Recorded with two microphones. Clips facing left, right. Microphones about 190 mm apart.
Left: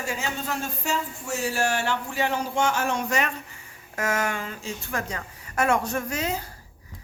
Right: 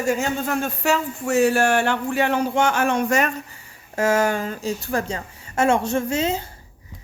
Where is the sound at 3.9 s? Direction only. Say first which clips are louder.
Right 8 dB; 30° right (ahead or behind).